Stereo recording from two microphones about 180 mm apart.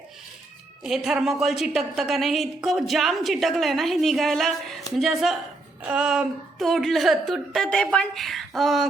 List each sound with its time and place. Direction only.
0.8 s a woman's voice: centre (ahead or behind)